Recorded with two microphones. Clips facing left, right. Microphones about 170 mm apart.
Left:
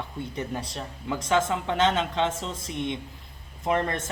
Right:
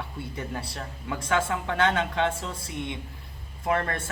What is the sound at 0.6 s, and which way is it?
Speech, 15° left (ahead or behind).